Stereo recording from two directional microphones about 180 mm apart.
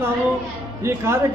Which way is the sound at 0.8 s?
15° right (ahead or behind).